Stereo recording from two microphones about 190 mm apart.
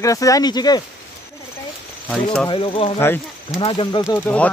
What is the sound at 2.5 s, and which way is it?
Speech, 30° left (ahead or behind).